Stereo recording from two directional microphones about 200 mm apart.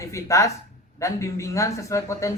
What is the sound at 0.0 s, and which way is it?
Speech, 15° left (ahead or behind).